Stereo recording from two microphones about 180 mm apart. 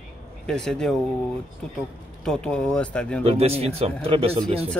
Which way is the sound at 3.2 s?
35° right (ahead or behind).